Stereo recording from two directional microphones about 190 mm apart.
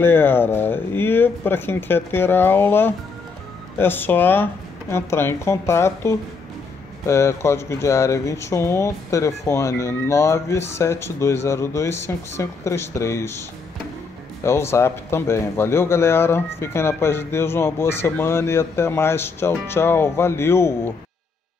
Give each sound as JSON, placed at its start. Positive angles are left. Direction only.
{"t": 0.0, "sound": "speech", "side_deg": 10}